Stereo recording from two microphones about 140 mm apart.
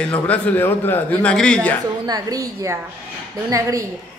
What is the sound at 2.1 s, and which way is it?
A woman's voice, 25° right (ahead or behind).